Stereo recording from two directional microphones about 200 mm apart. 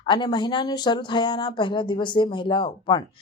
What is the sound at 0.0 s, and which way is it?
Speech, 20° left (ahead or behind).